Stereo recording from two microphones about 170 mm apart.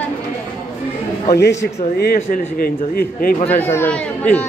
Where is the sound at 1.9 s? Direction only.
65° left (ahead or behind).